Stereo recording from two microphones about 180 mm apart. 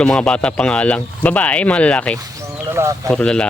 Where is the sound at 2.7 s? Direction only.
15° right (ahead or behind).